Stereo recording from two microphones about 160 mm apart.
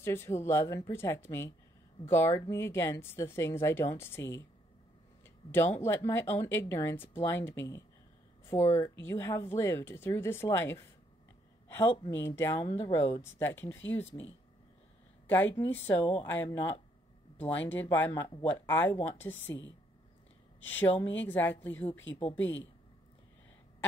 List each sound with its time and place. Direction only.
0.0 s speech: 15° left (ahead or behind)
12.1 s speech: 15° left (ahead or behind)
15.2 s speech: 10° left (ahead or behind)
20.6 s speech: 10° left (ahead or behind)